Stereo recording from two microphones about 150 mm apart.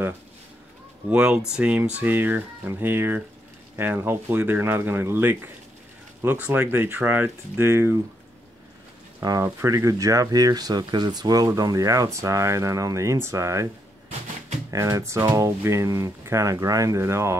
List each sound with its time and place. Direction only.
1.1 s speech: 5° right (ahead or behind)
9.2 s speech: 20° right (ahead or behind)
14.7 s speech: 20° right (ahead or behind)